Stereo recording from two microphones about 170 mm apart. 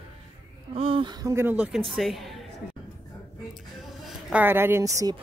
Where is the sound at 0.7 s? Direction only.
35° right (ahead or behind); by 2.4 s centre (ahead or behind).